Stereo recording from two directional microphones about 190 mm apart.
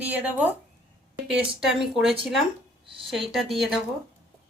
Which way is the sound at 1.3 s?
Centre (ahead or behind).